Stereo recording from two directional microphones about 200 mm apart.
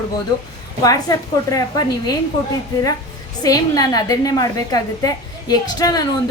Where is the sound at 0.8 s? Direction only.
15° left (ahead or behind).